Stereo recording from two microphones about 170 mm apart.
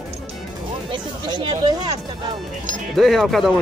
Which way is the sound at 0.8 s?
30° right (ahead or behind).